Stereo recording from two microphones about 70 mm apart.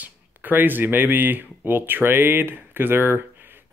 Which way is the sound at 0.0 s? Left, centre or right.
Right.